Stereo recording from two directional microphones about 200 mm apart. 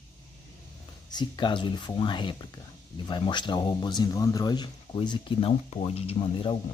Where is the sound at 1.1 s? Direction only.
20° left (ahead or behind).